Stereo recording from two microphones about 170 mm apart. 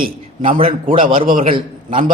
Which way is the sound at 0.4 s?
30° right (ahead or behind).